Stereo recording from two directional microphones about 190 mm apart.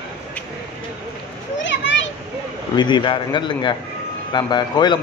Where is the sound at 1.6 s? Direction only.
70° left (ahead or behind).